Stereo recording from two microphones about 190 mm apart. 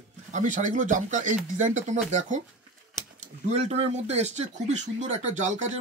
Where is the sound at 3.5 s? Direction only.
35° right (ahead or behind).